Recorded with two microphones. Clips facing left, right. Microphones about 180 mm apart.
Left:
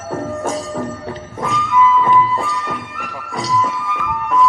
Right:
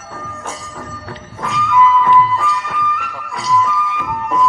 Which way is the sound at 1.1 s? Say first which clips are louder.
Left 3 dB; 20° left (ahead or behind).